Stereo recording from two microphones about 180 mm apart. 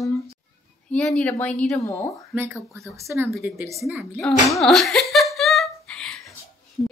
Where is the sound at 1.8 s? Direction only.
15° left (ahead or behind).